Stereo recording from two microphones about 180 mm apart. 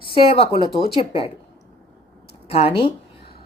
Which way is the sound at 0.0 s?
30° left (ahead or behind).